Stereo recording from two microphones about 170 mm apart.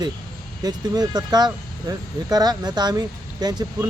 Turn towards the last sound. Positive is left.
turn(degrees=-25)  # may be behind; listen again after turning